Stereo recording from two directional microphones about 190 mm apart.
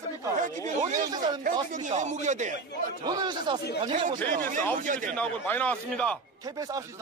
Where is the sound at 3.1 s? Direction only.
25° right (ahead or behind).